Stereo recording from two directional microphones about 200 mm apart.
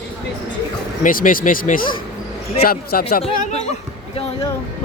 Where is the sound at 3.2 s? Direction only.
35° left (ahead or behind).